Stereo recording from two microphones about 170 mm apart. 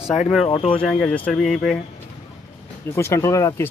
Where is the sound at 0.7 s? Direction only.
5° left (ahead or behind).